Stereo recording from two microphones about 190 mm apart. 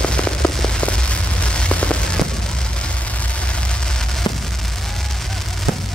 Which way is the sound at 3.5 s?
5° left (ahead or behind).